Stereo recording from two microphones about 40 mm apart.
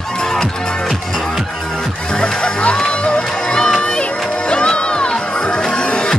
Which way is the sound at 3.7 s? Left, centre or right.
Left.